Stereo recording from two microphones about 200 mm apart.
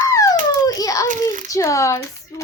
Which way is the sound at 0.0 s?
15° left (ahead or behind).